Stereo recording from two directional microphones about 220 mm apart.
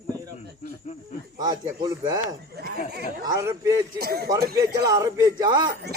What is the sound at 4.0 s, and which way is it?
Speech, 45° right (ahead or behind).